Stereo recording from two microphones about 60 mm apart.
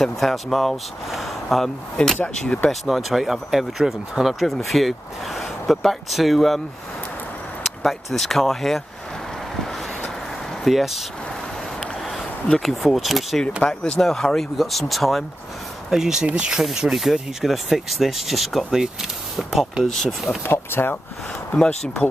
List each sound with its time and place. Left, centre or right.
0.0 s speech: centre
2.2 s speech: left
2.7 s speech: centre
7.8 s speech: centre
10.6 s speech: centre
12.4 s speech: centre
19.8 s speech: centre
20.4 s speech: left
21.5 s speech: centre